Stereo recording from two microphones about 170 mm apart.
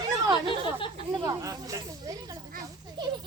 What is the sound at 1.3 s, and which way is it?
Snake, 20° right (ahead or behind).